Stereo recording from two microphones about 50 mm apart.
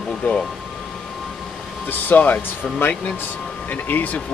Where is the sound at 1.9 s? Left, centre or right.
Left.